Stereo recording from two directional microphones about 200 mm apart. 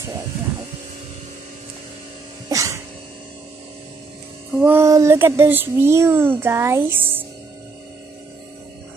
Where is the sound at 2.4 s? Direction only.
15° right (ahead or behind).